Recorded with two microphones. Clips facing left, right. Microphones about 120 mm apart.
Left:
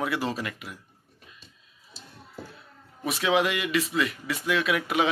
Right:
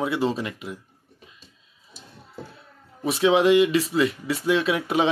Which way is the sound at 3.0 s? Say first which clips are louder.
Right 6 dB; 30° right (ahead or behind).